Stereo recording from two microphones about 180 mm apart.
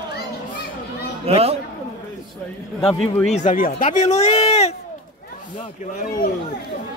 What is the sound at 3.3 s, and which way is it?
Speech, 40° left (ahead or behind).